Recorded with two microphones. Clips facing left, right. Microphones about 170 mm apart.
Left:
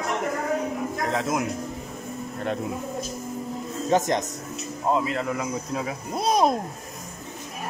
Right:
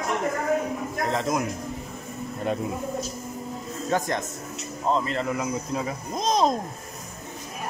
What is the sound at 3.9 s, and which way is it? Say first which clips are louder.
Speech: left 4 dB; 20° left (ahead or behind).